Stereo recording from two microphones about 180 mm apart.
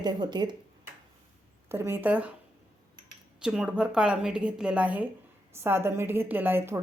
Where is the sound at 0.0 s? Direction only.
25° right (ahead or behind).